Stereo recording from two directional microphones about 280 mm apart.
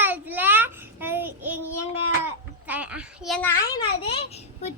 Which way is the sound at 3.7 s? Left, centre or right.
Centre.